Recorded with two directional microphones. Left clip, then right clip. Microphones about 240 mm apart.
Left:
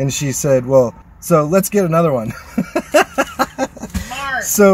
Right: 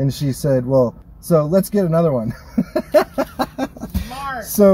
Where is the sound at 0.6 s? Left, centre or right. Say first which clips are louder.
Left 3 dB; left.